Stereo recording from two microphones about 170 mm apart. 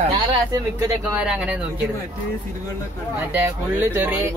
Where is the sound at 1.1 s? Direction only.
5° right (ahead or behind).